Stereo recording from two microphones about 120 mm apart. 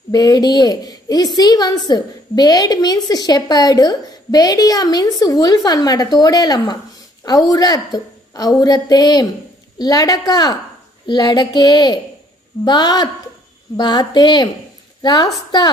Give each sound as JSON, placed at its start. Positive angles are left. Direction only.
{"t": 0.1, "sound": "a woman's voice", "side_deg": 35}